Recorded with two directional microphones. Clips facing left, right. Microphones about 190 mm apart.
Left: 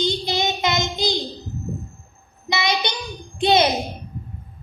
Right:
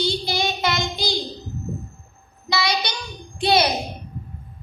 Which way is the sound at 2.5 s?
20° left (ahead or behind).